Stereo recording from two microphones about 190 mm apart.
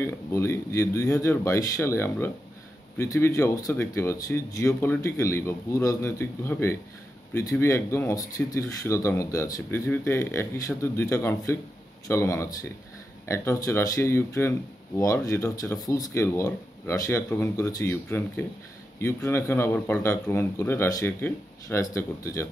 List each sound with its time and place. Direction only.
0.0 s speech: 15° left (ahead or behind)